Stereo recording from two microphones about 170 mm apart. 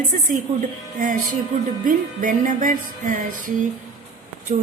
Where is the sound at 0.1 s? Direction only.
50° right (ahead or behind).